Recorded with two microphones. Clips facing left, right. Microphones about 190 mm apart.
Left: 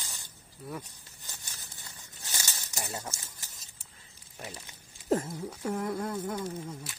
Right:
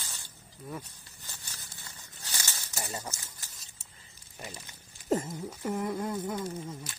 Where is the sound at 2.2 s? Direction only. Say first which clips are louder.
Even; 15° left (ahead or behind).